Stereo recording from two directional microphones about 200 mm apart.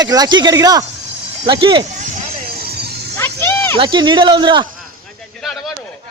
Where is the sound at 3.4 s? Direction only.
10° left (ahead or behind).